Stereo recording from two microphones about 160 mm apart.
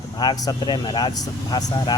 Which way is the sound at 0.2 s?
25° left (ahead or behind).